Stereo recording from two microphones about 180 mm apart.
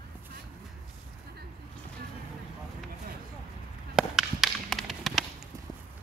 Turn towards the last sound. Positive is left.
turn(degrees=0)  # may be behind; listen again after turning